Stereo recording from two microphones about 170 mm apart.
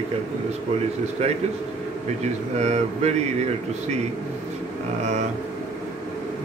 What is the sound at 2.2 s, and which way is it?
Speech, 40° right (ahead or behind).